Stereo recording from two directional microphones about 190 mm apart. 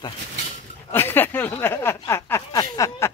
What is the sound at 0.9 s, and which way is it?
Speech, 10° left (ahead or behind).